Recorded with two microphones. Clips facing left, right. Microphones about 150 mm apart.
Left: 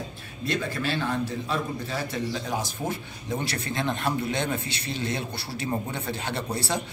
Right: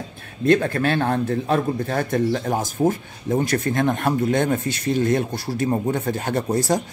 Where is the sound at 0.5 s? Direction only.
55° right (ahead or behind).